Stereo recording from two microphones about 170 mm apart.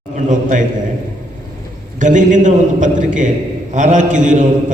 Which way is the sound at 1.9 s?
50° right (ahead or behind).